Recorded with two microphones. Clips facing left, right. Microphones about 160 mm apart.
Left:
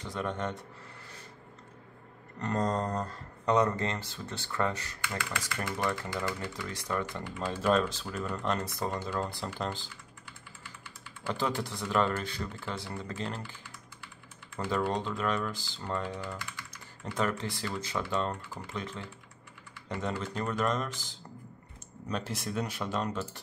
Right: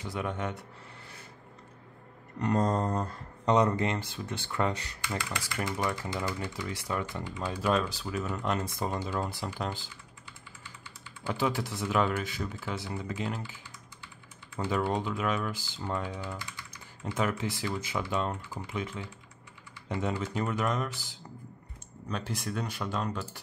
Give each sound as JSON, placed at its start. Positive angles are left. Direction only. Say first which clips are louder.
{"t": 0.0, "sound": "speech", "louder": "even", "side_deg": -10}
{"t": 2.3, "sound": "speech", "louder": "right 3 dB", "side_deg": -15}
{"t": 8.1, "sound": "speech", "louder": "right 1 dB", "side_deg": -15}
{"t": 11.2, "sound": "speech", "louder": "right 2 dB", "side_deg": -10}
{"t": 22.1, "sound": "speech", "louder": "left 1 dB", "side_deg": 0}